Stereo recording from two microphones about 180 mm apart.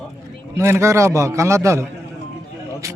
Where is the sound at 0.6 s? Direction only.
15° right (ahead or behind).